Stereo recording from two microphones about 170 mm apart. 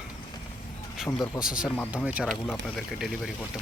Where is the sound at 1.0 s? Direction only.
5° right (ahead or behind).